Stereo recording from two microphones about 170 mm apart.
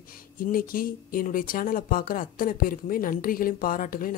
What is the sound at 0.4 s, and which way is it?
Speech, 55° left (ahead or behind).